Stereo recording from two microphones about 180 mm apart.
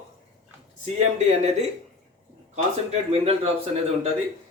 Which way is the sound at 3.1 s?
35° right (ahead or behind).